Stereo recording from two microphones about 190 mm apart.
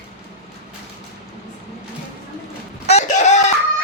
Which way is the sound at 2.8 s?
35° left (ahead or behind).